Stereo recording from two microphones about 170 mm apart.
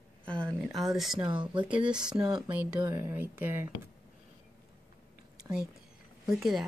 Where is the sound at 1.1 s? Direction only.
25° right (ahead or behind).